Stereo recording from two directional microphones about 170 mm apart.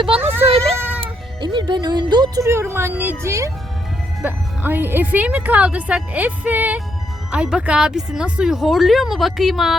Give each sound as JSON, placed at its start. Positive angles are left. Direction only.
{"t": 0.2, "sound": "a sound", "side_deg": -10}
{"t": 0.8, "sound": "music", "side_deg": -10}
{"t": 1.0, "sound": "speech", "side_deg": -25}